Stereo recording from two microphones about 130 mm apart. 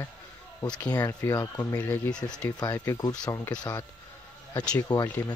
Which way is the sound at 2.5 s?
25° left (ahead or behind).